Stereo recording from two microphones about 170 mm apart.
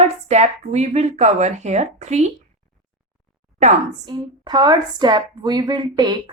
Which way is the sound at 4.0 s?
25° right (ahead or behind).